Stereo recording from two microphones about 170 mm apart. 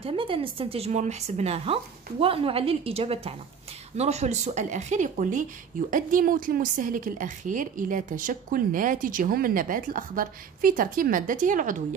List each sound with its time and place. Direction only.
0.0 s a woman's voice: 30° right (ahead or behind); by 11.8 s 50° right (ahead or behind)